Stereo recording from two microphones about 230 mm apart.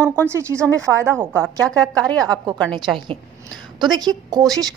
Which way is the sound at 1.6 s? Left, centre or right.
Centre.